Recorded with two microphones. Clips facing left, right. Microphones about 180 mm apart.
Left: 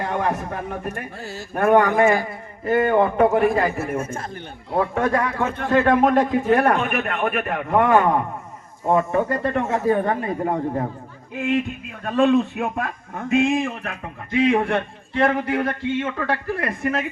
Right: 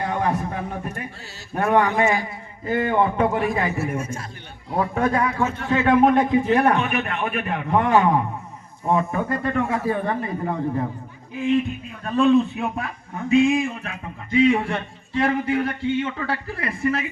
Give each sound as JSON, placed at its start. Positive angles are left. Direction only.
{"t": 0.0, "sound": "a sound", "side_deg": 50}
{"t": 1.5, "sound": "a man's voice", "side_deg": 50}
{"t": 11.3, "sound": "a man's voice", "side_deg": 60}